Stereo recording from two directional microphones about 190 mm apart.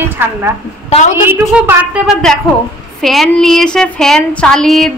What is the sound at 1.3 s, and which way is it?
Speech, 10° right (ahead or behind).